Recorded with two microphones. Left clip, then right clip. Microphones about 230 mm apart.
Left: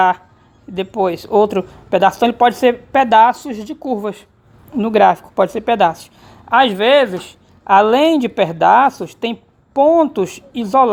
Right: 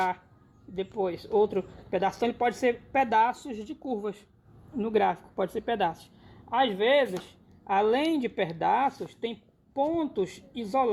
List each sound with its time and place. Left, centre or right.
0.8 s a woman's voice: centre